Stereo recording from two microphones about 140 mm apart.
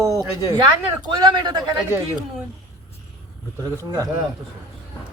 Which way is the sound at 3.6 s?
25° right (ahead or behind).